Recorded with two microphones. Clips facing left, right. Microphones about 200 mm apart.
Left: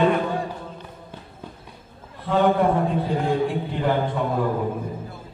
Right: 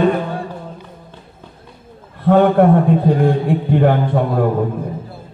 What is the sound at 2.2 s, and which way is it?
A man's voice, 55° right (ahead or behind).